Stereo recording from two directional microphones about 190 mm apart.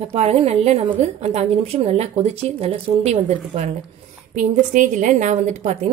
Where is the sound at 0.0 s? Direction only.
35° right (ahead or behind).